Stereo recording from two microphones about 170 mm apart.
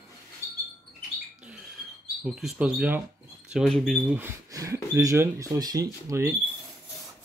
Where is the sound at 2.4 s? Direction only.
5° right (ahead or behind).